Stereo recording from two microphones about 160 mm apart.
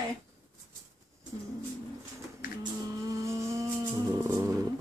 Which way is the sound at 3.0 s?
20° right (ahead or behind).